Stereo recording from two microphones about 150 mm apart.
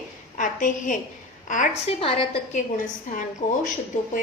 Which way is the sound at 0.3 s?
60° left (ahead or behind).